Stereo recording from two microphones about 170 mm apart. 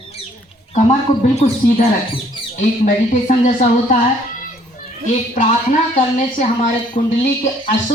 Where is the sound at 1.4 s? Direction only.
40° left (ahead or behind).